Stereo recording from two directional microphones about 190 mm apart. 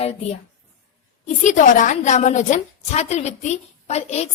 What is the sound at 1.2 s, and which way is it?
A woman's voice, 40° left (ahead or behind).